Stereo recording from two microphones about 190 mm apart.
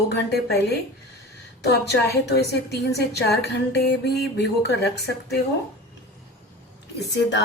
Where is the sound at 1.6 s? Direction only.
60° left (ahead or behind).